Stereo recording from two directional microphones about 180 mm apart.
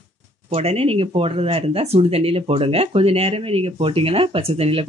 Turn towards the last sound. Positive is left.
turn(degrees=-35)  # may be behind; listen again after turning